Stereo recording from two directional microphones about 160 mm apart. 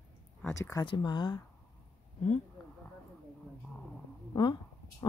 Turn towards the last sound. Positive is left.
turn(degrees=30)  # may be behind; listen again after turning